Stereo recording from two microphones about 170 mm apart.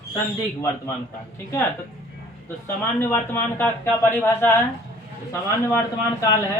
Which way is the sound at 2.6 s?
10° left (ahead or behind).